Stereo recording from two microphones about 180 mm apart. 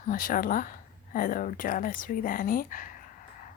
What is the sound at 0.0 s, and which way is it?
A woman's voice, 50° left (ahead or behind).